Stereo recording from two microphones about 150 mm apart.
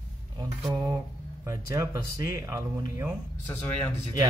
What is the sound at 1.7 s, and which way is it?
Speech, 20° right (ahead or behind).